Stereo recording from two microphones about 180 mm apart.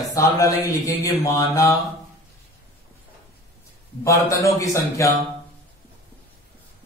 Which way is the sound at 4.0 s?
15° left (ahead or behind).